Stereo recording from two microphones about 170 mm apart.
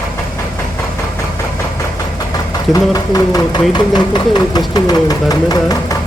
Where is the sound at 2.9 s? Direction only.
20° left (ahead or behind).